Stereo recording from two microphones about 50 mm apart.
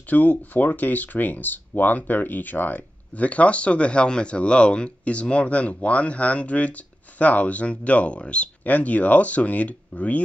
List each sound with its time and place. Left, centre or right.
0.1 s speech: left